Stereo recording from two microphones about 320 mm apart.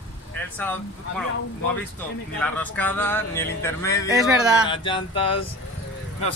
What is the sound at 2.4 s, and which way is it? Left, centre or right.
Speech, centre.